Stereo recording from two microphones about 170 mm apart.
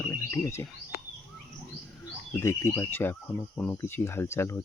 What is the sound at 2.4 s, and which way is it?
Cricket, 15° left (ahead or behind).